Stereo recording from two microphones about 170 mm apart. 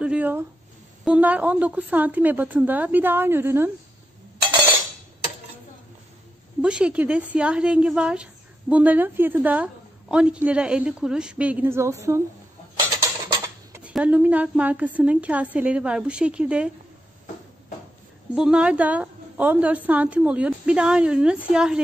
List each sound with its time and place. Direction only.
0.0 s a woman's voice: 10° right (ahead or behind)
6.6 s a woman's voice: 5° right (ahead or behind)
13.8 s a woman's voice: 10° right (ahead or behind)
18.3 s a woman's voice: 5° right (ahead or behind)